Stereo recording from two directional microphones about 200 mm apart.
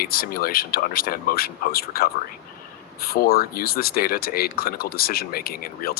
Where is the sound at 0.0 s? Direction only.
50° left (ahead or behind).